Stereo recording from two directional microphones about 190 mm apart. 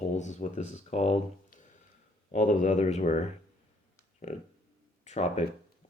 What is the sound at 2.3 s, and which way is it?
Speech, 40° left (ahead or behind).